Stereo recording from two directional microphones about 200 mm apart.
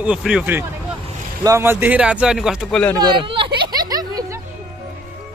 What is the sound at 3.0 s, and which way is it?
Speech, 25° right (ahead or behind).